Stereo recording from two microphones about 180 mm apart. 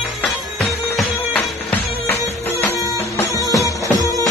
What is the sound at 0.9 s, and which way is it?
Music, 5° left (ahead or behind).